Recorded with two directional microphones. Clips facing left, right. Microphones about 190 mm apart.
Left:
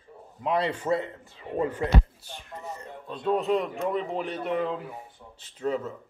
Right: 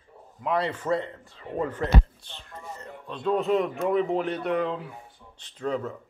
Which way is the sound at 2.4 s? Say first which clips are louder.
Left 2 dB; 20° left (ahead or behind).